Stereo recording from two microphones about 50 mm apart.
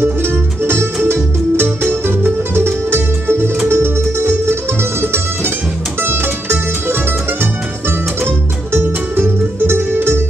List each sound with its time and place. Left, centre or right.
0.0 s music: right
8.7 s music: right